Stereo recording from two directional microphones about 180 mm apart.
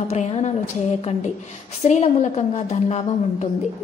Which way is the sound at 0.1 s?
35° left (ahead or behind).